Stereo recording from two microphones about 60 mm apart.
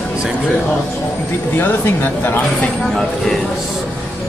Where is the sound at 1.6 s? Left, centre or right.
Left.